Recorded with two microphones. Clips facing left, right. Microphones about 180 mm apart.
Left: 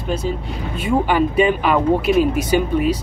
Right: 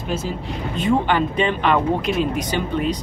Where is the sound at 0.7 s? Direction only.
10° left (ahead or behind).